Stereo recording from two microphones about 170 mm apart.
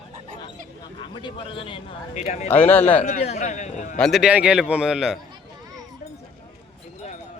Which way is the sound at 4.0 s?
5° right (ahead or behind).